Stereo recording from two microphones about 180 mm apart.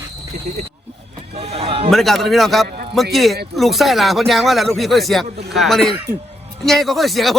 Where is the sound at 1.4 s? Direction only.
35° right (ahead or behind).